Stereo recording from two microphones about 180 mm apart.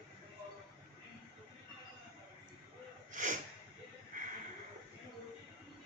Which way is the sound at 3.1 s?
45° right (ahead or behind).